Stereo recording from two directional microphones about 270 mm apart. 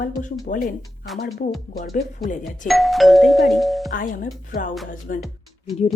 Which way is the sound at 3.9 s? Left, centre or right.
Left.